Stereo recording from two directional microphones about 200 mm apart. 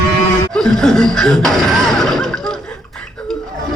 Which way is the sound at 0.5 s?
5° left (ahead or behind).